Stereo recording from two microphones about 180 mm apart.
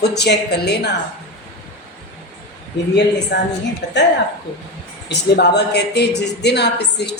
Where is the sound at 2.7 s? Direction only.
75° left (ahead or behind).